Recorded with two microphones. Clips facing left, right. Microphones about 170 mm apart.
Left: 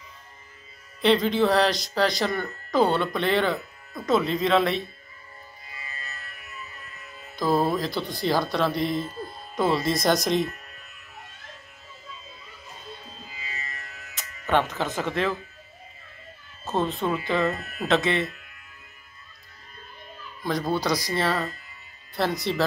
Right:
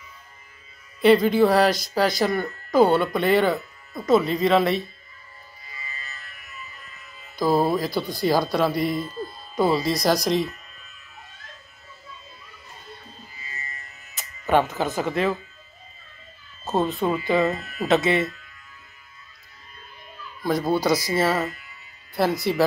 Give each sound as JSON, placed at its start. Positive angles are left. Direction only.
{"t": 1.0, "sound": "speech", "side_deg": -5}
{"t": 7.3, "sound": "speech", "side_deg": -5}
{"t": 10.4, "sound": "music", "side_deg": 55}
{"t": 13.3, "sound": "music", "side_deg": 90}
{"t": 14.4, "sound": "speech", "side_deg": -5}
{"t": 17.0, "sound": "speech", "side_deg": -5}
{"t": 20.4, "sound": "speech", "side_deg": -5}